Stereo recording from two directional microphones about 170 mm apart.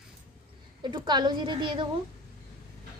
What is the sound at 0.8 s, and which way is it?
A woman's voice, 25° right (ahead or behind).